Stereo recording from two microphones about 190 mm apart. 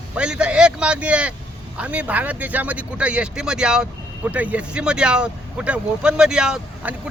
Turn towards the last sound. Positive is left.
turn(degrees=-5)  # may be behind; listen again after turning